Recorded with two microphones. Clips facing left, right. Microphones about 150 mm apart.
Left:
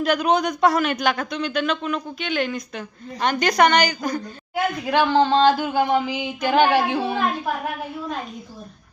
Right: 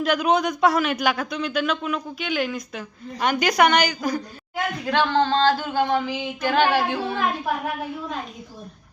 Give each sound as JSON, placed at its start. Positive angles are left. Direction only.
{"t": 0.0, "sound": "a man's voice", "side_deg": -5}
{"t": 4.5, "sound": "speech", "side_deg": 10}